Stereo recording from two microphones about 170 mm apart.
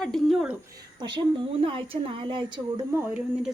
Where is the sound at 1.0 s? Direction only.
25° right (ahead or behind).